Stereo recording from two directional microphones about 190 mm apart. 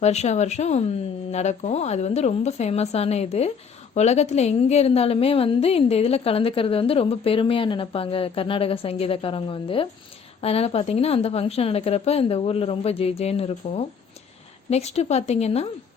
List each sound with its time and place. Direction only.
0.0 s a woman's voice: 35° left (ahead or behind)